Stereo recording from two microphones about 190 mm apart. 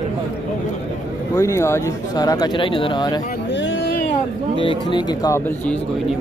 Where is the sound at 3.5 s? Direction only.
75° left (ahead or behind).